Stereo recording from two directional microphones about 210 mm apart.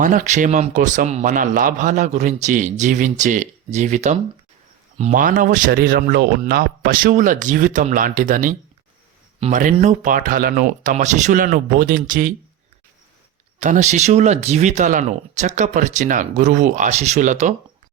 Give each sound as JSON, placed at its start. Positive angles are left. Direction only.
{"t": 0.0, "sound": "speech", "side_deg": -35}
{"t": 13.6, "sound": "speech", "side_deg": -35}